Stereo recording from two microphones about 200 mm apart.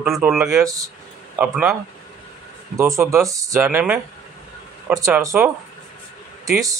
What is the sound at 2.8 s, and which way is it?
Speech, 15° right (ahead or behind).